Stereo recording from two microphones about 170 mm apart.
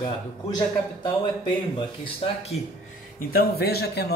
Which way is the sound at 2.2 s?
35° left (ahead or behind).